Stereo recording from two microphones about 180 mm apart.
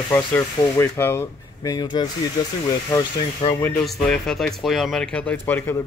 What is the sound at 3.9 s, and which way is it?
Speech, centre (ahead or behind).